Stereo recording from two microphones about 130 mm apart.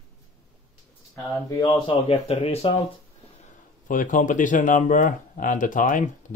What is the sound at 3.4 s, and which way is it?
Speech, 90° left.